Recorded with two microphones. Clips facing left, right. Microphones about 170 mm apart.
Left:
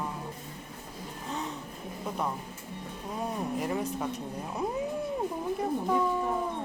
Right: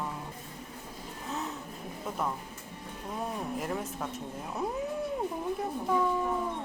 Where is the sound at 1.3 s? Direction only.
5° right (ahead or behind).